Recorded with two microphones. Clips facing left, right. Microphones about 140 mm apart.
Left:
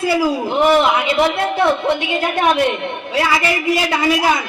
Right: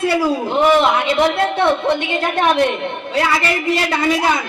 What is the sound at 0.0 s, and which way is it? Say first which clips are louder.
A woman's voice: even; 5° left (ahead or behind).